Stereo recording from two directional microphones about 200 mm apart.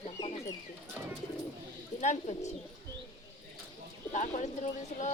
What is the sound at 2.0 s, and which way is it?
Speech, 35° left (ahead or behind).